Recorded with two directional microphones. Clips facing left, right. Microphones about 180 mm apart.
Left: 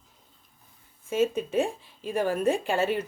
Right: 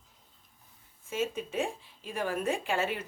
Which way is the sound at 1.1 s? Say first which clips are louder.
Left 8 dB; 35° left (ahead or behind).